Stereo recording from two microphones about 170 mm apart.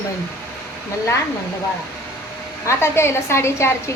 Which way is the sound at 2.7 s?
15° left (ahead or behind).